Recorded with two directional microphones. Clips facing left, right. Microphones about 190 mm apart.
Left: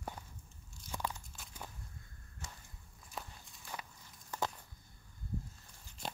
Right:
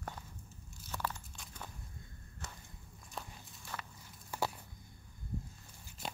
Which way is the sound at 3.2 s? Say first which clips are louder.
Even; centre (ahead or behind).